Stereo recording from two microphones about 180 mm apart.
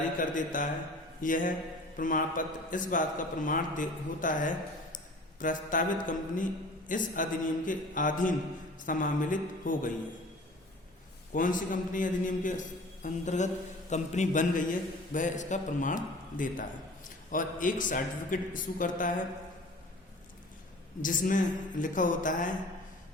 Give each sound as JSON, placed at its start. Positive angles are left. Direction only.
{"t": 0.2, "sound": "a man's voice", "side_deg": 45}
{"t": 11.3, "sound": "a man's voice", "side_deg": 45}
{"t": 21.0, "sound": "a man's voice", "side_deg": 45}